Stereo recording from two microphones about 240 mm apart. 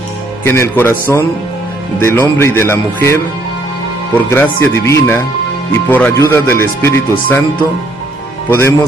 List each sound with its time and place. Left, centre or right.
0.4 s speech: centre
4.3 s speech: centre
8.5 s speech: centre